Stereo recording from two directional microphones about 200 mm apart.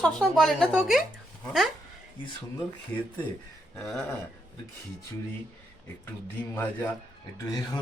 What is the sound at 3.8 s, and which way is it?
Speech, centre (ahead or behind).